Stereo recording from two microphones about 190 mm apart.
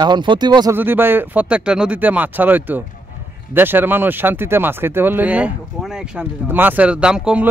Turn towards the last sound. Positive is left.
turn(degrees=-5)  # may be behind; listen again after turning